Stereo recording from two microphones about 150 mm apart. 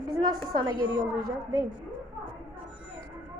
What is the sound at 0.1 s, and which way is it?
Speech, 25° right (ahead or behind).